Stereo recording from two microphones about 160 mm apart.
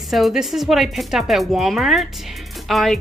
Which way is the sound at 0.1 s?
Centre (ahead or behind).